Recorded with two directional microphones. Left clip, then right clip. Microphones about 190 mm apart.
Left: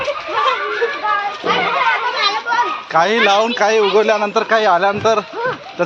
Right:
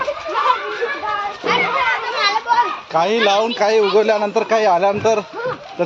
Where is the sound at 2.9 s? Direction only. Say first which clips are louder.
Left 5 dB; centre (ahead or behind).